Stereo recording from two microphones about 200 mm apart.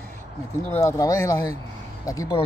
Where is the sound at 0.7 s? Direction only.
15° left (ahead or behind).